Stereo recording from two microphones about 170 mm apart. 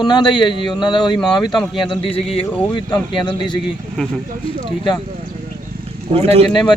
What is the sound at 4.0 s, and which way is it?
Speech, 5° left (ahead or behind).